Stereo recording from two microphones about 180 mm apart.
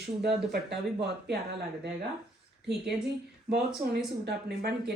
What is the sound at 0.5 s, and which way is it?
Speech, 65° right (ahead or behind).